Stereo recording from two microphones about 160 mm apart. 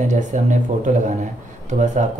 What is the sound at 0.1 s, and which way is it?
Speech, 50° right (ahead or behind).